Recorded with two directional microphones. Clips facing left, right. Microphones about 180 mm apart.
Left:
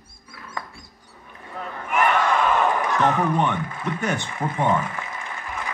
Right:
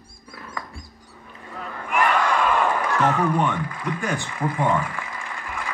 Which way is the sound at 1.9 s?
20° left (ahead or behind).